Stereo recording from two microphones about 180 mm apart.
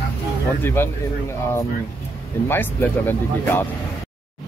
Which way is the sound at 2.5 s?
10° left (ahead or behind).